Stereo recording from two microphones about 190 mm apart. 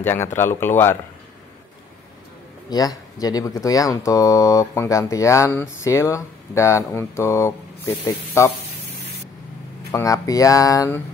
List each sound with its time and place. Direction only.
0.0 s speech: 10° left (ahead or behind)
2.7 s speech: 20° left (ahead or behind)
9.8 s speech: 15° left (ahead or behind)